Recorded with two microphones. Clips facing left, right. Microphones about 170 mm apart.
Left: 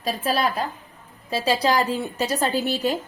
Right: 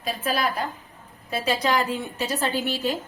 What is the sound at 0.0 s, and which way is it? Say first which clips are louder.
A woman's voice: left 3 dB; 35° left (ahead or behind).